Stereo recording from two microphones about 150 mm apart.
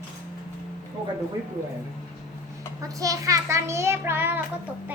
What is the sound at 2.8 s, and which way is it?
A child's voice, 20° right (ahead or behind).